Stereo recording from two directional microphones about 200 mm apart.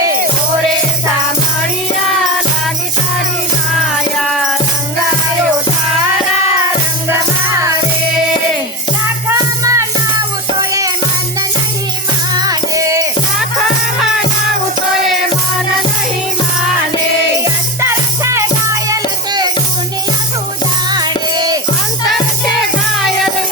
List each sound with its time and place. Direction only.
4.3 s music: centre (ahead or behind)
7.1 s music: 10° right (ahead or behind)
9.3 s music: 15° right (ahead or behind)
12.4 s music: 15° right (ahead or behind)
17.7 s music: 15° right (ahead or behind)
20.9 s music: 20° right (ahead or behind)